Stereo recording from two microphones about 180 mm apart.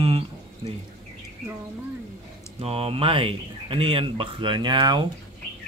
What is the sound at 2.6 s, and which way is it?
Speech, 35° right (ahead or behind).